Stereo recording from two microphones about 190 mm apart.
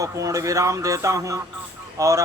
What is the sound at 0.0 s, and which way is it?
Speech, 15° right (ahead or behind).